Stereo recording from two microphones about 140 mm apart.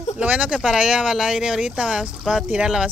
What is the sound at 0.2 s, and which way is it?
Speech, 10° right (ahead or behind).